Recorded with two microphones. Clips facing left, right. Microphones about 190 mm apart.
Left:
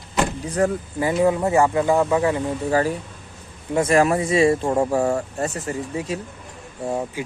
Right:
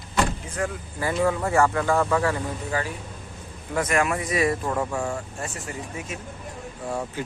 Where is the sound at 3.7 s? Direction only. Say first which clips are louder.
Left 6 dB; 30° left (ahead or behind).